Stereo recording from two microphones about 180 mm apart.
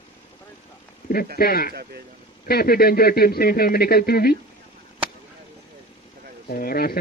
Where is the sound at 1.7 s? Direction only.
60° right (ahead or behind).